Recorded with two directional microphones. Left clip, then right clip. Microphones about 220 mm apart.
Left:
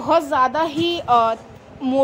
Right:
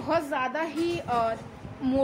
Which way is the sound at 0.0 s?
25° left (ahead or behind).